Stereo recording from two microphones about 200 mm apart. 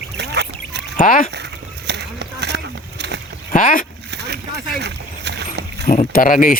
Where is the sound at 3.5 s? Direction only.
40° left (ahead or behind).